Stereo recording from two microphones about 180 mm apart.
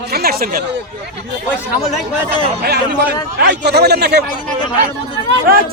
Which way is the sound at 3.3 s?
65° right (ahead or behind).